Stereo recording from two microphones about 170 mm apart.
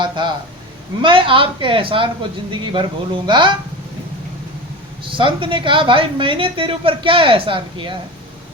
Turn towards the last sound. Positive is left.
turn(degrees=-30)  # may be behind; listen again after turning